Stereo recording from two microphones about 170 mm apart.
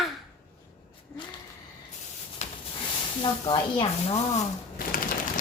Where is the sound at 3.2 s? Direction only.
30° left (ahead or behind).